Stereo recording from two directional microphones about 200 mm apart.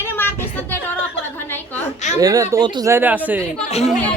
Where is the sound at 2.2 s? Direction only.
15° right (ahead or behind).